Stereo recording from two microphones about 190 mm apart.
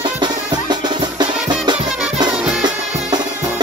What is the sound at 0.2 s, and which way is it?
Music, 20° right (ahead or behind).